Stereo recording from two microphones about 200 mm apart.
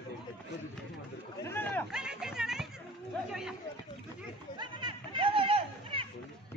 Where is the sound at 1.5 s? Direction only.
10° left (ahead or behind).